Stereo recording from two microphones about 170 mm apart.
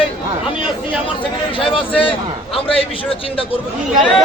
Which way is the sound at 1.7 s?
30° left (ahead or behind).